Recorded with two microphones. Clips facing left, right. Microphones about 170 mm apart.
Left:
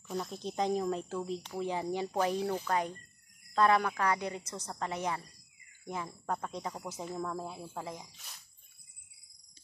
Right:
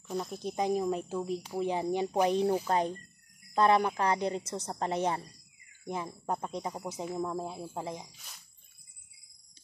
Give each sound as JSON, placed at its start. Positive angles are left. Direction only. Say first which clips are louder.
{"t": 0.1, "sound": "speech", "louder": "right 2 dB", "side_deg": -5}
{"t": 5.9, "sound": "speech", "louder": "right 2 dB", "side_deg": -20}